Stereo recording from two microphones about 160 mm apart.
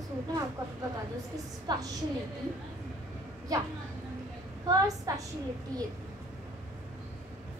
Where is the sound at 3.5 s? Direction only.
25° right (ahead or behind).